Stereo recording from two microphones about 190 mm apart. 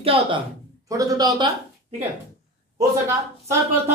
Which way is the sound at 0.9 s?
20° right (ahead or behind).